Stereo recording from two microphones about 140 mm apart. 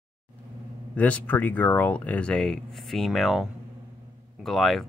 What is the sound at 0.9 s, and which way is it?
Speech, 10° left (ahead or behind).